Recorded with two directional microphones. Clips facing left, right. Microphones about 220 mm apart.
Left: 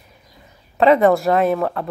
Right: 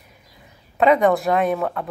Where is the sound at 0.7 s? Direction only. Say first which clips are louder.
Left 3 dB; centre (ahead or behind).